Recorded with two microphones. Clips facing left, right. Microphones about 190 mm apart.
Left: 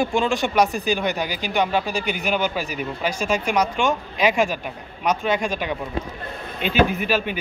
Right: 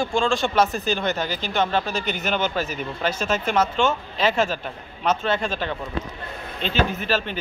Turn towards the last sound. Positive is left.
turn(degrees=10)  # may be behind; listen again after turning